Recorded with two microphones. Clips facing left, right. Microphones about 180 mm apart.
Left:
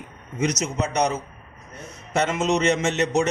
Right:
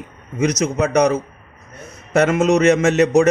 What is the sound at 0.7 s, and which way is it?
A man's voice, 55° right (ahead or behind).